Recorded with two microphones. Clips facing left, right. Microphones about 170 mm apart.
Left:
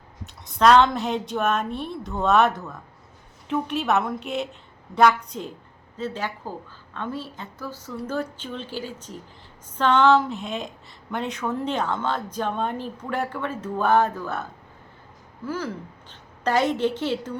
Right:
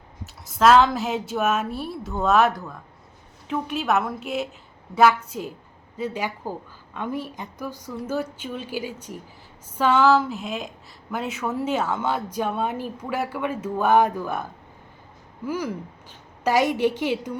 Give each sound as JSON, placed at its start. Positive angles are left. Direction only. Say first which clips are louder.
{"t": 0.3, "sound": "a woman's voice", "louder": "even", "side_deg": 0}
{"t": 15.4, "sound": "speech", "louder": "right 2 dB", "side_deg": -15}